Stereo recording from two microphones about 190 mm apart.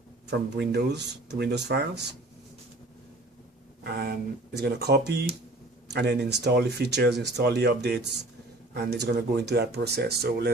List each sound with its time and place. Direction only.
0.3 s speech: 60° right (ahead or behind)
3.8 s speech: 60° right (ahead or behind)